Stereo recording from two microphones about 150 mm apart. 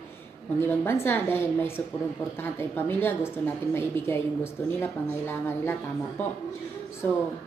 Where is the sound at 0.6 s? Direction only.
15° left (ahead or behind).